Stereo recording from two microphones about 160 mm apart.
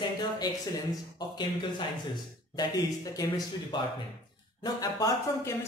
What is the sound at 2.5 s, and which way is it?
Speech, 20° left (ahead or behind).